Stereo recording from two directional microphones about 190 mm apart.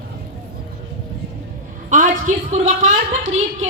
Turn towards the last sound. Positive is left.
turn(degrees=-40)  # may be behind; listen again after turning